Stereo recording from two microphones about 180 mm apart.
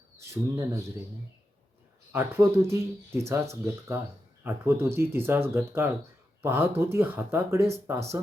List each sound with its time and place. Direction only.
0.2 s speech: 15° right (ahead or behind)
2.1 s speech: 15° right (ahead or behind)